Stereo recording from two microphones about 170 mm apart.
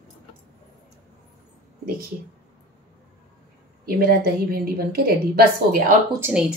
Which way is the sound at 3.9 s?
60° right (ahead or behind).